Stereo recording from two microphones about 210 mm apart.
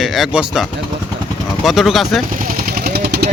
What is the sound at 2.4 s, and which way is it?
Vehicle, 40° right (ahead or behind).